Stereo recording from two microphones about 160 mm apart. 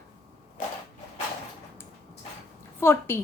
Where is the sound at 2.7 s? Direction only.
15° left (ahead or behind).